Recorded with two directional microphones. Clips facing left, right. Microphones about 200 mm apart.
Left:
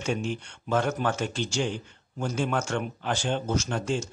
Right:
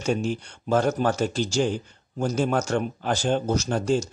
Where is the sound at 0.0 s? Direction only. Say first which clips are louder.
Right 4 dB; 40° right (ahead or behind).